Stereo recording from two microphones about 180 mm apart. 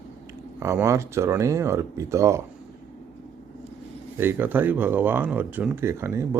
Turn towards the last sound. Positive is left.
turn(degrees=-15)  # may be behind; listen again after turning